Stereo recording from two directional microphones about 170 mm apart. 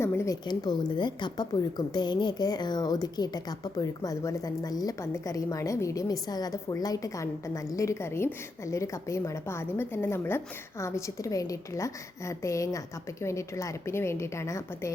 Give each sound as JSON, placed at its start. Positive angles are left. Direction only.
{"t": 0.0, "sound": "a woman's voice", "side_deg": 15}